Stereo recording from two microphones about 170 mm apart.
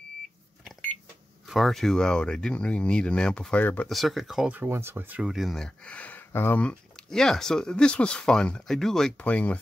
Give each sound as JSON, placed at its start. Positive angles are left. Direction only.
{"t": 1.5, "sound": "speech", "side_deg": 0}